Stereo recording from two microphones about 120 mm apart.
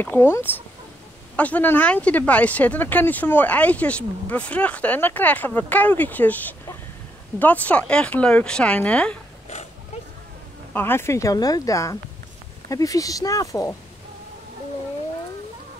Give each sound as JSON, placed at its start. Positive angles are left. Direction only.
{"t": 0.0, "sound": "speech", "side_deg": 15}
{"t": 10.7, "sound": "speech", "side_deg": 20}